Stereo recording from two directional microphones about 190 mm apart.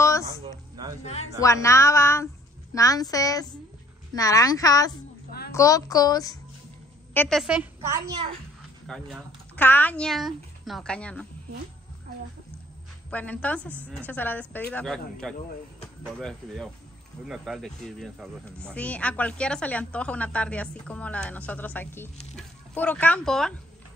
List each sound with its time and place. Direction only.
0.0 s a sound: 15° left (ahead or behind)
1.4 s a woman's voice: 15° left (ahead or behind)
7.2 s speech: centre (ahead or behind)
8.8 s speech: 5° left (ahead or behind)
13.1 s speech: 10° left (ahead or behind)